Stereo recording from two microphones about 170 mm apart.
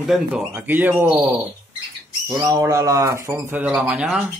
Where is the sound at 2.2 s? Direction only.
20° right (ahead or behind).